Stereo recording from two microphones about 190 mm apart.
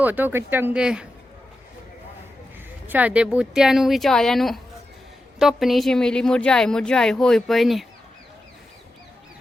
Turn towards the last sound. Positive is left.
turn(degrees=0)  # may be behind; listen again after turning